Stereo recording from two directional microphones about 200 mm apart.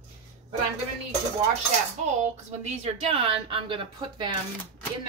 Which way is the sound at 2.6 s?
30° right (ahead or behind).